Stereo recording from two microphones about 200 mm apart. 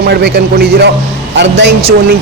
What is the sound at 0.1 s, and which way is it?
A man's voice, 55° right (ahead or behind).